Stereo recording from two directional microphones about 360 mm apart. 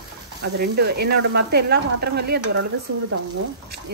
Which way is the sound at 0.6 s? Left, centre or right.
Right.